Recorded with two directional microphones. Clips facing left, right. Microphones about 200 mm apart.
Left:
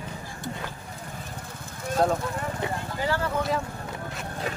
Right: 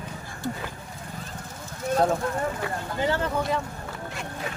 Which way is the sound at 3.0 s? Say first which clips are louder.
Right 2 dB; 20° right (ahead or behind).